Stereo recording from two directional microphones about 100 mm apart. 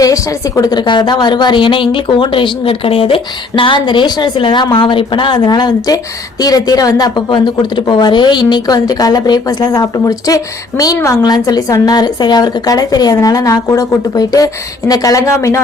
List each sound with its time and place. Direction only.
0.0 s a woman's voice: 35° left (ahead or behind)